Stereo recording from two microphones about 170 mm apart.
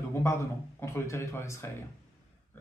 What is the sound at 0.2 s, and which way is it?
Speech, 15° left (ahead or behind).